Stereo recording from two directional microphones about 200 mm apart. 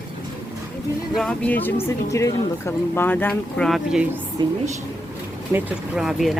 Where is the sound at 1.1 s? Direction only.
5° left (ahead or behind).